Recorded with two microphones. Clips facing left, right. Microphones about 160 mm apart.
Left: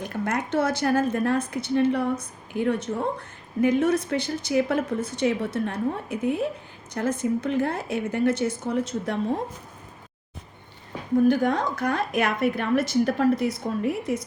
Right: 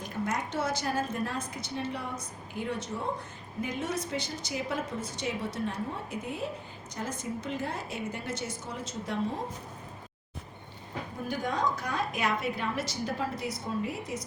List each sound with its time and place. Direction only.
0.0 s a woman's voice: 65° left (ahead or behind)
11.3 s a woman's voice: 65° left (ahead or behind)